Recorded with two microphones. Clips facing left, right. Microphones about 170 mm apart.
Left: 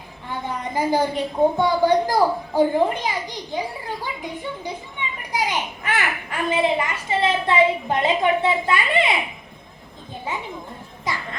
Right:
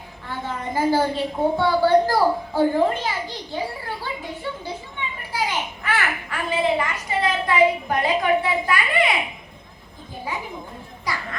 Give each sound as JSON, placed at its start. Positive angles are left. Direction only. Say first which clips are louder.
{"t": 0.3, "sound": "a child's voice", "louder": "left 1 dB", "side_deg": 15}
{"t": 11.1, "sound": "music", "louder": "left 1 dB", "side_deg": 20}